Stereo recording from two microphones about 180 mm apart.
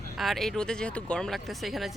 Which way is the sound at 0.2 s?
Centre (ahead or behind).